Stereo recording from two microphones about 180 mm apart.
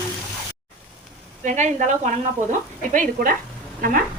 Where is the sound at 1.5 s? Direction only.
40° right (ahead or behind).